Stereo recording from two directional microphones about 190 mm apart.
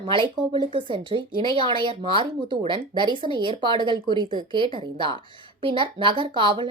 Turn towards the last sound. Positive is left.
turn(degrees=-25)  # may be behind; listen again after turning